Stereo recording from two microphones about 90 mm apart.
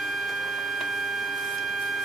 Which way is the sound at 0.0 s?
Centre (ahead or behind).